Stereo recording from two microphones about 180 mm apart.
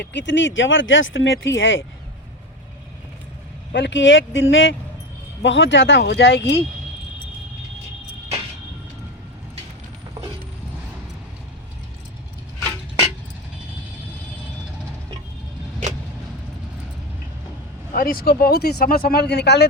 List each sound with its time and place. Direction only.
0.0 s speech: 80° left
3.7 s speech: 75° left (ahead or behind)
17.9 s speech: 55° left (ahead or behind)